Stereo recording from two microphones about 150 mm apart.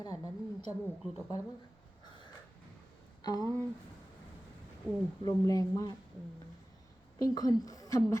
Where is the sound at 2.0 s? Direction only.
30° left (ahead or behind).